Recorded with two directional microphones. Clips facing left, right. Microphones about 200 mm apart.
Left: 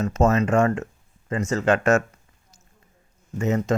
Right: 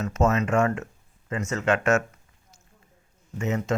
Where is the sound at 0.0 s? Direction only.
35° left (ahead or behind).